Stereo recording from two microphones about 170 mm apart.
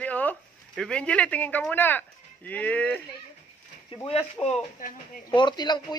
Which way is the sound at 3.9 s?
30° left (ahead or behind).